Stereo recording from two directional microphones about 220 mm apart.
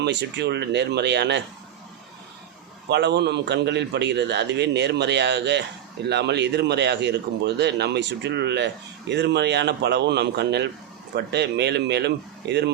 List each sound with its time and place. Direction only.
0.0 s speech: 50° right (ahead or behind)
2.9 s speech: 50° right (ahead or behind)